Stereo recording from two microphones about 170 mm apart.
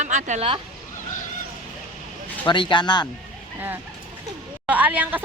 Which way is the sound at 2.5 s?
25° left (ahead or behind).